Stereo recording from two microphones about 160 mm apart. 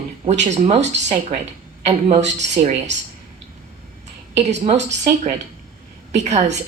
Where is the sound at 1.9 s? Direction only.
40° right (ahead or behind).